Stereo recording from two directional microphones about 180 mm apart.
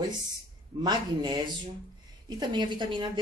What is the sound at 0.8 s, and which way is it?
A man's voice, 25° right (ahead or behind).